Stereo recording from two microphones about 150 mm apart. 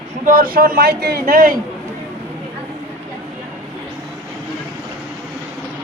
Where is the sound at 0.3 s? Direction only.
70° right (ahead or behind).